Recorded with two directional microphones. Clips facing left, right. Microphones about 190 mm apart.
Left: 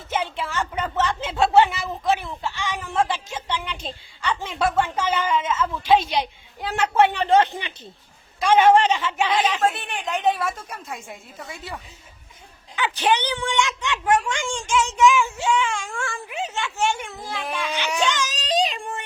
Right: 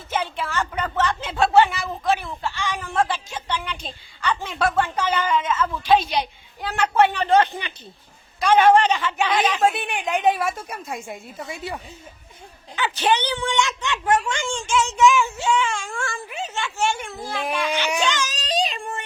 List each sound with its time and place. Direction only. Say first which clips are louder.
0.1 s a woman's voice: even; 20° left (ahead or behind)
9.6 s a woman's voice: right 2 dB; 10° right (ahead or behind)
12.7 s speech: even; 10° left (ahead or behind)
17.4 s a woman's voice: right 4 dB; 15° right (ahead or behind)
18.2 s speech: left 1 dB; 15° left (ahead or behind)